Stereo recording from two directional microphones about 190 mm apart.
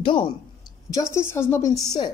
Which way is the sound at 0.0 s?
25° left (ahead or behind).